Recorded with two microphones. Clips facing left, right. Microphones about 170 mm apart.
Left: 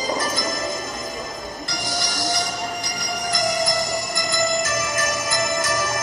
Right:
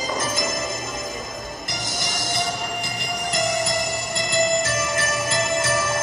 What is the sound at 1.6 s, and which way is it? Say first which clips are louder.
Music: left 4 dB; 20° right (ahead or behind).